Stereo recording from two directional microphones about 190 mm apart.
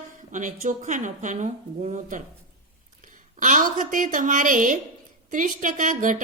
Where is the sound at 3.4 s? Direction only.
40° right (ahead or behind).